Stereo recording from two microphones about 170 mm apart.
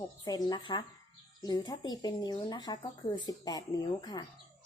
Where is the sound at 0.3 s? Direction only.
25° left (ahead or behind).